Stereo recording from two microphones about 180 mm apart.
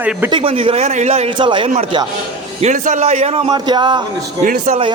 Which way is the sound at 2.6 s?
45° right (ahead or behind).